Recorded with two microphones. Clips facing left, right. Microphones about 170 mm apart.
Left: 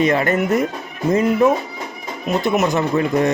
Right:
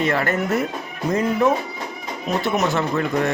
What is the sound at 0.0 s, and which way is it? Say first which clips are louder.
Speech: left 4 dB; 20° left (ahead or behind).